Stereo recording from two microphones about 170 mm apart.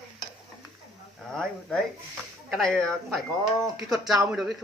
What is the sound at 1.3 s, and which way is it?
Speech, 5° left (ahead or behind).